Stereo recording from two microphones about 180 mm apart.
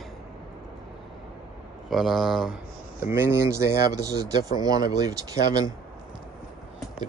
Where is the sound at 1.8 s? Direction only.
Centre (ahead or behind).